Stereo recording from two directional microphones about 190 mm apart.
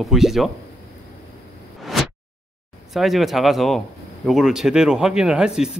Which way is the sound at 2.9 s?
Centre (ahead or behind).